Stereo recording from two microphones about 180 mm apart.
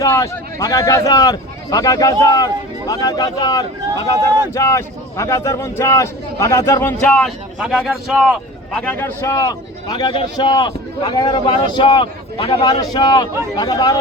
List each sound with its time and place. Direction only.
0.0 s a man's voice: 20° left (ahead or behind)
7.0 s speech: 5° left (ahead or behind)
8.7 s a man's voice: 5° left (ahead or behind)